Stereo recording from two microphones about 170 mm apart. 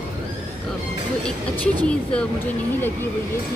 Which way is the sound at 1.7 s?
5° left (ahead or behind).